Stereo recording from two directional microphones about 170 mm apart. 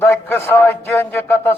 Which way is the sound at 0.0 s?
15° left (ahead or behind).